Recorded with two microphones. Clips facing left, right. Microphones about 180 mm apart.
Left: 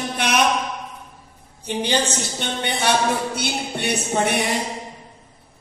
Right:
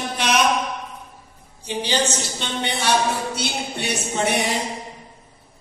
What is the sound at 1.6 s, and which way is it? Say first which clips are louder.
A woman's voice: left 1 dB; 55° left (ahead or behind).